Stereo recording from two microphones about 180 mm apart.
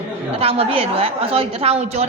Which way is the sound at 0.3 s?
35° right (ahead or behind).